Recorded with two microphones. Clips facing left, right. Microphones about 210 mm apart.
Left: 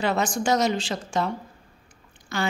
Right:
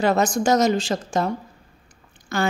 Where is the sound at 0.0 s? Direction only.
45° right (ahead or behind).